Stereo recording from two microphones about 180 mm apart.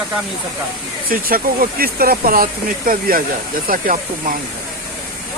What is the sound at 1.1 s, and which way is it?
Speech, 50° right (ahead or behind).